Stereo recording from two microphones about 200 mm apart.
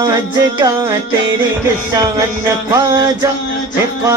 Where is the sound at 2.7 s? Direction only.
15° right (ahead or behind).